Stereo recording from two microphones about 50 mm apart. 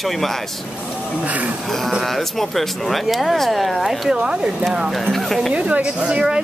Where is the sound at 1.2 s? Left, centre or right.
Right.